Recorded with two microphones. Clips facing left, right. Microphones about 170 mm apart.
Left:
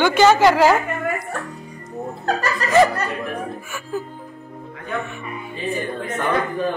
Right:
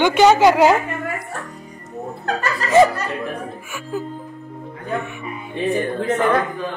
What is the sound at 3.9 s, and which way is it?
Music, 10° right (ahead or behind).